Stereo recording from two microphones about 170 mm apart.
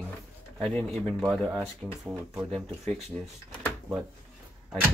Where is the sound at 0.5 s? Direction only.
5° left (ahead or behind).